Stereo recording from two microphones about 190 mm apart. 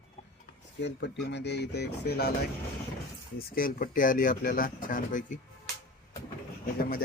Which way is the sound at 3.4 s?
50° left (ahead or behind).